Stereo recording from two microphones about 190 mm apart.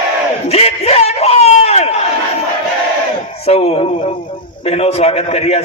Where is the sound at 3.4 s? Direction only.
35° left (ahead or behind).